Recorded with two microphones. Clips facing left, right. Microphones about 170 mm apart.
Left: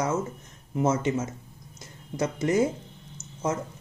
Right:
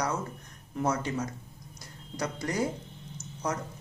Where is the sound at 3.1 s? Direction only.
25° left (ahead or behind).